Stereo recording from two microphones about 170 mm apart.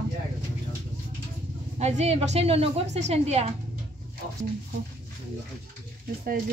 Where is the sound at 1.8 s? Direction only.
40° right (ahead or behind).